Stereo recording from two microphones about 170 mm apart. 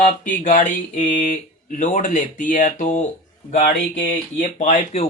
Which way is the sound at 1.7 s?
50° left (ahead or behind).